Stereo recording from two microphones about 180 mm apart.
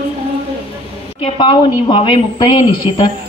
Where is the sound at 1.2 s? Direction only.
25° left (ahead or behind).